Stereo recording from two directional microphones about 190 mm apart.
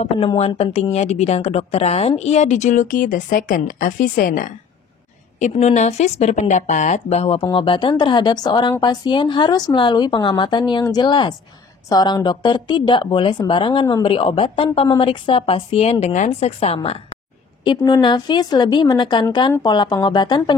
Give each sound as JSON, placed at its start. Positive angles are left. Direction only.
{"t": 0.0, "sound": "speech", "side_deg": 30}